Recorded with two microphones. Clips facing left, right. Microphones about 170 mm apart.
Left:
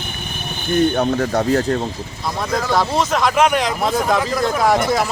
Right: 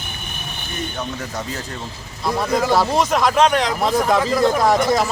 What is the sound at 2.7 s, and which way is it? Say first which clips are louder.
Speech: left 1 dB; 15° right (ahead or behind).